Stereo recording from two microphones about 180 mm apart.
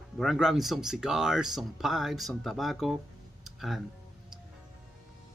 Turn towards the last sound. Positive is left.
turn(degrees=0)  # may be behind; listen again after turning